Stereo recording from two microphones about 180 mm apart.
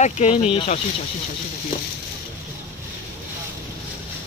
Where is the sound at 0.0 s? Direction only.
40° left (ahead or behind).